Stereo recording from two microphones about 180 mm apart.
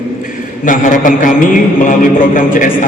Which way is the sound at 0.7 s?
50° left (ahead or behind).